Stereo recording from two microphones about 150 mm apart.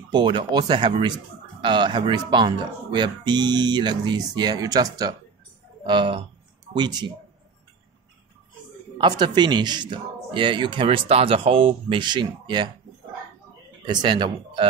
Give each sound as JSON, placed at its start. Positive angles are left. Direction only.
{"t": 0.1, "sound": "speech", "side_deg": -30}
{"t": 8.9, "sound": "speech", "side_deg": -30}
{"t": 13.8, "sound": "speech", "side_deg": -30}